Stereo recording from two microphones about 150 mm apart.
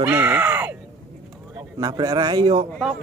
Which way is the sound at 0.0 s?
10° right (ahead or behind).